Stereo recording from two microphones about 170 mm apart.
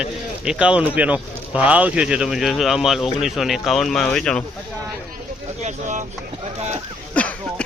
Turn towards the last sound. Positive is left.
turn(degrees=10)  # may be behind; listen again after turning